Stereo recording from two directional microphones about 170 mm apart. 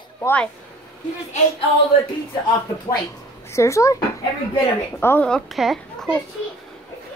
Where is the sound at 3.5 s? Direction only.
15° left (ahead or behind).